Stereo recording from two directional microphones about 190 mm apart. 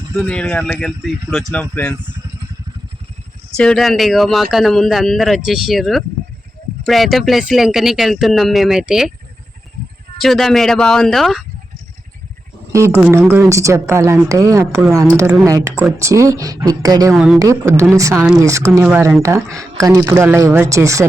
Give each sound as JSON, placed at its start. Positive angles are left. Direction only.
{"t": 0.2, "sound": "a man's voice", "side_deg": 5}
{"t": 3.6, "sound": "a man's voice", "side_deg": 5}
{"t": 10.2, "sound": "a man's voice", "side_deg": 0}
{"t": 12.7, "sound": "speech", "side_deg": -15}
{"t": 17.2, "sound": "a man's voice", "side_deg": -5}
{"t": 17.4, "sound": "speech", "side_deg": -15}